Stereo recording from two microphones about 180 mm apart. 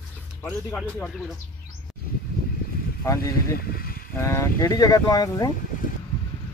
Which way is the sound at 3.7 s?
55° left (ahead or behind).